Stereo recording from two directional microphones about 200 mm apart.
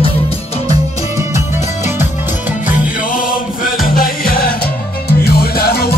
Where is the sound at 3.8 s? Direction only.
45° left (ahead or behind).